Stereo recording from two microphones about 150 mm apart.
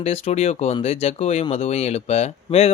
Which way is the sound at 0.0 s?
45° left (ahead or behind).